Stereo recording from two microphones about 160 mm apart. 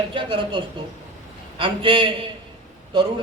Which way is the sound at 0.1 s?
30° right (ahead or behind).